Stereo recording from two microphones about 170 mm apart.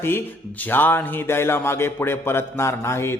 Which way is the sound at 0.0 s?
15° left (ahead or behind).